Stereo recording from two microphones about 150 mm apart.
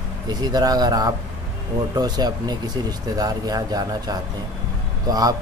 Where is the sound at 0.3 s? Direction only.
25° right (ahead or behind).